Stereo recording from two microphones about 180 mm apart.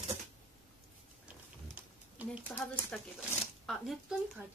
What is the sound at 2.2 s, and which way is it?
A woman's voice, 10° right (ahead or behind).